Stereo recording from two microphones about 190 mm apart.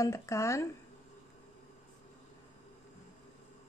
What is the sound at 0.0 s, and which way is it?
Speech, 15° left (ahead or behind).